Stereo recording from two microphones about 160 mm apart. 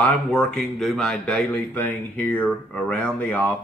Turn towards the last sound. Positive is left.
turn(degrees=10)  # may be behind; listen again after turning